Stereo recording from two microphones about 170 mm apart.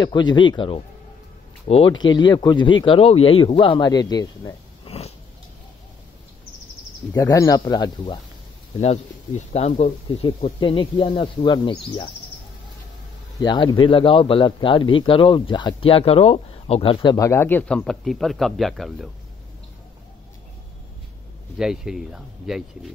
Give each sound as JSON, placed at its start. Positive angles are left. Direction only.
{"t": 0.0, "sound": "a man's voice", "side_deg": 25}
{"t": 4.8, "sound": "biting", "side_deg": 40}
{"t": 7.2, "sound": "a man's voice", "side_deg": 20}
{"t": 9.5, "sound": "speech", "side_deg": 40}
{"t": 13.4, "sound": "a man's voice", "side_deg": 25}
{"t": 21.5, "sound": "speech", "side_deg": -5}